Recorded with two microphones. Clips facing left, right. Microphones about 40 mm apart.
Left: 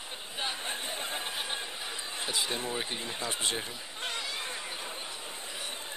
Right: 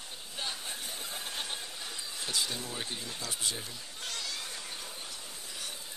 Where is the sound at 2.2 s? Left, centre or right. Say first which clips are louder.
Left 3 dB; left.